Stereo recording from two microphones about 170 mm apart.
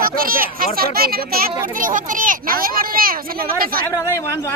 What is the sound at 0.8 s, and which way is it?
A child's voice, 60° right (ahead or behind).